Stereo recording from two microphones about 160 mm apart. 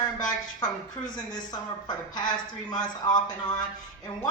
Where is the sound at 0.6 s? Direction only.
25° left (ahead or behind).